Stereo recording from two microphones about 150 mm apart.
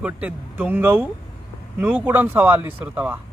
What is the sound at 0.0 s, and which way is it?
A man's voice, 10° right (ahead or behind).